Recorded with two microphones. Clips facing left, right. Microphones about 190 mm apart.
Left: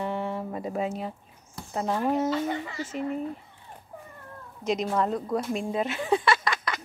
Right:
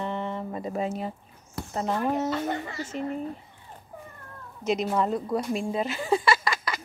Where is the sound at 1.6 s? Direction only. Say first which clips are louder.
Right 6 dB; 60° right (ahead or behind).